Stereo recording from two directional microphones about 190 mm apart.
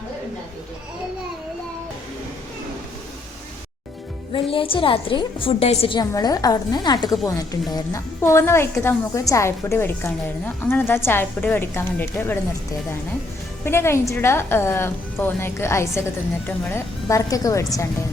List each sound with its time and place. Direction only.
4.3 s a woman's voice: 25° left (ahead or behind); by 12.4 s 10° left (ahead or behind)
13.7 s a woman's voice: 15° left (ahead or behind)